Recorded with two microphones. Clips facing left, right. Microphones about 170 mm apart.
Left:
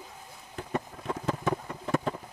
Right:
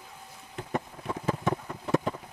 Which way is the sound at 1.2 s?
Centre (ahead or behind).